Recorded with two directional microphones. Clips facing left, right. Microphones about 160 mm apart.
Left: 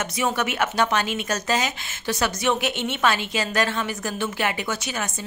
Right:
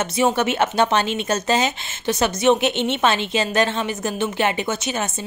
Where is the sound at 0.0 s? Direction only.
25° right (ahead or behind).